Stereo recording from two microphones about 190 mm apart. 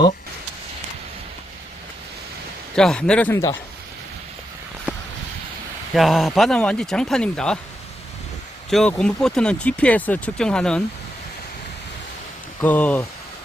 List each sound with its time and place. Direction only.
2.7 s speech: 5° left (ahead or behind)
4.9 s a sound: 10° right (ahead or behind)
5.9 s speech: centre (ahead or behind)
8.7 s speech: 5° left (ahead or behind)
12.6 s speech: 10° left (ahead or behind)